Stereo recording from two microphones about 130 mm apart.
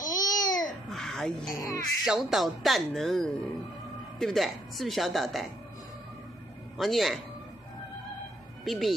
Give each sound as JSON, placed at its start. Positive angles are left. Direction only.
{"t": 0.1, "sound": "babbling", "side_deg": 30}
{"t": 0.8, "sound": "a sound", "side_deg": 5}
{"t": 1.5, "sound": "speech", "side_deg": 25}
{"t": 2.0, "sound": "speech", "side_deg": -5}
{"t": 6.8, "sound": "speech", "side_deg": 0}
{"t": 8.6, "sound": "speech", "side_deg": 0}